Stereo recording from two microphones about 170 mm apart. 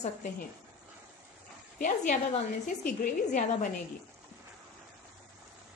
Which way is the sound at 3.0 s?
50° left (ahead or behind).